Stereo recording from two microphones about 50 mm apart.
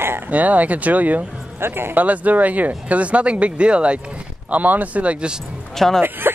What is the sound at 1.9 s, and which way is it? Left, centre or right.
Speech, right.